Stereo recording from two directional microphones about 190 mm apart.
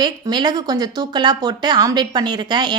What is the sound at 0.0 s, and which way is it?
Speech, 20° right (ahead or behind).